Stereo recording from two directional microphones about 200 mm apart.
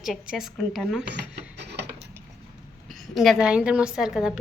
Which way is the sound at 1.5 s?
55° right (ahead or behind).